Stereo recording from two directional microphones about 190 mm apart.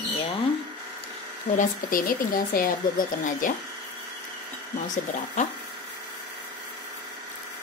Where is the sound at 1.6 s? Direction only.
50° left (ahead or behind).